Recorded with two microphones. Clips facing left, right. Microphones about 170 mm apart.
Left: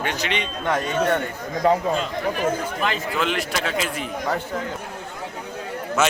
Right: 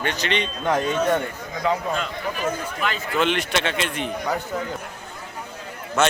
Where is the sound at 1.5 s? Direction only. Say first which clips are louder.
Left 4 dB; 40° left (ahead or behind).